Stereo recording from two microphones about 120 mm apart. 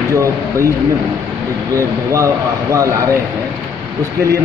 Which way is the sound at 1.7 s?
25° right (ahead or behind).